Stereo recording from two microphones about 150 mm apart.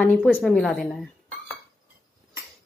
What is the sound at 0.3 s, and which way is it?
Speech, 5° left (ahead or behind).